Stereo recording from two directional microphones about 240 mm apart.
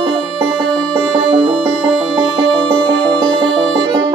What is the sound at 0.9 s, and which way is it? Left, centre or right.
Music, right.